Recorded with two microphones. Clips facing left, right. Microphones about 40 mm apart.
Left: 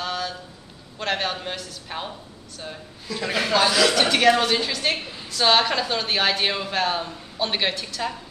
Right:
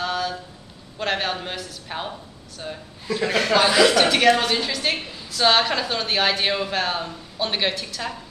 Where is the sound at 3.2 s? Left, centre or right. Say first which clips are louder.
Right 2 dB; centre.